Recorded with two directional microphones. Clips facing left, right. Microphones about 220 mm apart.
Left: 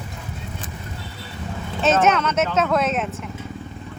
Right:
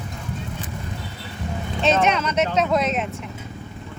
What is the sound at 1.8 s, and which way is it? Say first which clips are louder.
Speech: left 2 dB; 5° left (ahead or behind).